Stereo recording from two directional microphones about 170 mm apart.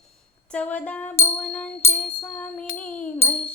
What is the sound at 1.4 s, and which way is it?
Music, 5° left (ahead or behind).